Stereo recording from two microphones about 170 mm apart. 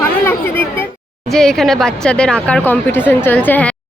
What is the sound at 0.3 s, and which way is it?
A woman's voice, 10° left (ahead or behind).